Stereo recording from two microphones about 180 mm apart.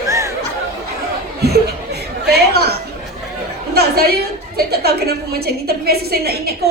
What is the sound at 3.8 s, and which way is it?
A woman's voice, 60° right (ahead or behind).